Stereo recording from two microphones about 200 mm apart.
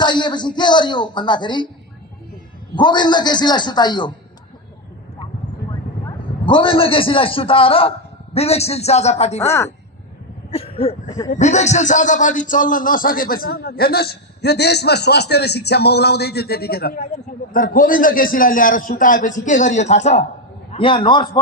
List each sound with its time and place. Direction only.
0.0 s speech: 20° left (ahead or behind)
2.7 s speech: 20° left (ahead or behind)
6.1 s a man's voice: 25° left (ahead or behind)
9.5 s a woman's voice: 15° left (ahead or behind)
10.5 s a sound: 30° left (ahead or behind)
11.3 s a man's voice: 35° left (ahead or behind)